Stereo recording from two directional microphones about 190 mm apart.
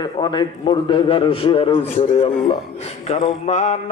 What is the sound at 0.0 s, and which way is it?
A man's voice, 20° left (ahead or behind).